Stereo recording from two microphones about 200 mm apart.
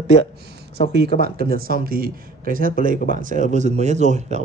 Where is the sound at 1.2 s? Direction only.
50° right (ahead or behind).